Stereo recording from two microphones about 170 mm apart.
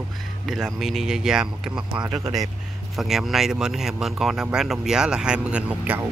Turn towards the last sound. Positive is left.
turn(degrees=-5)  # may be behind; listen again after turning